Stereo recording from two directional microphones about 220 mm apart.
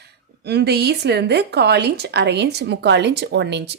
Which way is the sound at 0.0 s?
50° right (ahead or behind).